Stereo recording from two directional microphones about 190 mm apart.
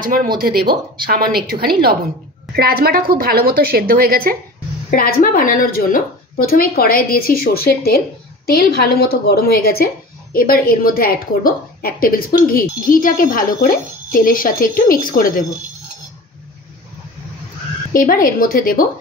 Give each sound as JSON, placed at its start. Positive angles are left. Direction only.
{"t": 0.0, "sound": "a woman's voice", "side_deg": -50}
{"t": 4.9, "sound": "a woman's voice", "side_deg": 50}
{"t": 17.9, "sound": "a woman's voice", "side_deg": 45}